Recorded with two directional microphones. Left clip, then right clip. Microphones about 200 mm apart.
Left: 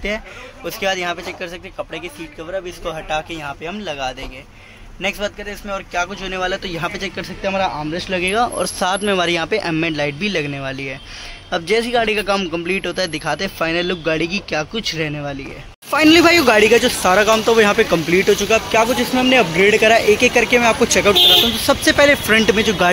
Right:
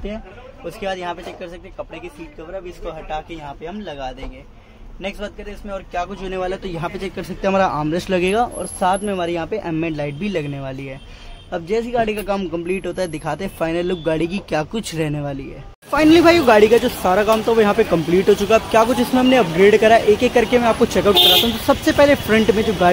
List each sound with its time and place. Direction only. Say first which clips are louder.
0.7 s a man's voice: left 5 dB; 5° left (ahead or behind)
2.8 s a man's voice: left 4 dB; 15° left (ahead or behind)
5.9 s a man's voice: left 2 dB; 10° right (ahead or behind)
7.4 s speech: right 3 dB; 40° right (ahead or behind)
8.5 s a man's voice: even; 5° left (ahead or behind); by 15.3 s 20° right (ahead or behind)
15.9 s speech: left 1 dB; 5° left (ahead or behind)
18.3 s speech: right 4 dB; 30° right (ahead or behind)
19.6 s a man's voice: right 2 dB; 10° right (ahead or behind)